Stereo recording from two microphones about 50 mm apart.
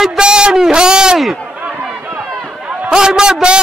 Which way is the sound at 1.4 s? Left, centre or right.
Right.